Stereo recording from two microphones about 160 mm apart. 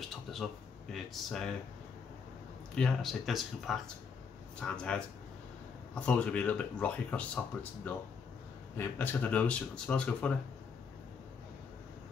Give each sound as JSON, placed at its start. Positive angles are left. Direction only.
{"t": 0.1, "sound": "speech", "side_deg": 0}
{"t": 2.7, "sound": "speech", "side_deg": 5}
{"t": 8.7, "sound": "speech", "side_deg": 10}